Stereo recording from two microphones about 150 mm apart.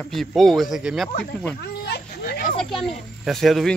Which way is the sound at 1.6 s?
90° left.